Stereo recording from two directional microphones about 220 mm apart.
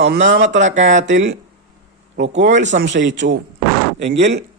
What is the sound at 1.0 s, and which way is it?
Speech, 55° right (ahead or behind).